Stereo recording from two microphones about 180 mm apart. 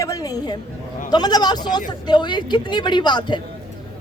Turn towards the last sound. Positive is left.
turn(degrees=25)  # may be behind; listen again after turning